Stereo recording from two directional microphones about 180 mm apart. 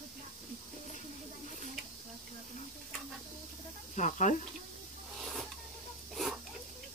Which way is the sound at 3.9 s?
40° left (ahead or behind).